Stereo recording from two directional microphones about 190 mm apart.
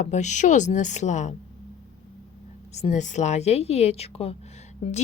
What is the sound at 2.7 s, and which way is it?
Speech, 35° left (ahead or behind).